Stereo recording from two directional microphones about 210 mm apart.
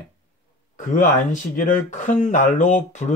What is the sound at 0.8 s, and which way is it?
Speech, 35° left (ahead or behind).